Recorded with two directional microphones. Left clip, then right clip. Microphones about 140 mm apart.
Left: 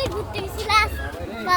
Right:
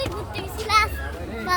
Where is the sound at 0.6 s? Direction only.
30° right (ahead or behind).